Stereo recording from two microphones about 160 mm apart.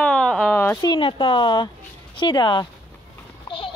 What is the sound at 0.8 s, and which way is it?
Speech, 30° left (ahead or behind).